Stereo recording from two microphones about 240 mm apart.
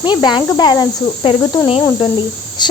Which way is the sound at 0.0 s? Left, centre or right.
Centre.